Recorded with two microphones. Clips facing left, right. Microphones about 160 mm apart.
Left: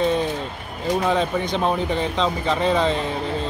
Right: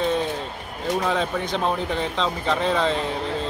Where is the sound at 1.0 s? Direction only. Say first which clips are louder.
Left 3 dB; centre (ahead or behind).